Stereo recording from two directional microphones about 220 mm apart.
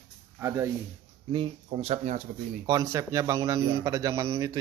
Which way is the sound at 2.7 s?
15° right (ahead or behind).